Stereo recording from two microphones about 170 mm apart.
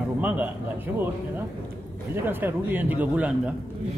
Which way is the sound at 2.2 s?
10° right (ahead or behind).